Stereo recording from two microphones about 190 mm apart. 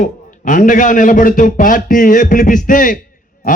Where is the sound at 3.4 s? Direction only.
45° left (ahead or behind).